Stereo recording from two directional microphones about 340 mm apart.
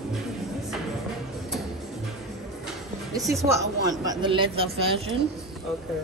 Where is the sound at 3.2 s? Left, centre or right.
Centre.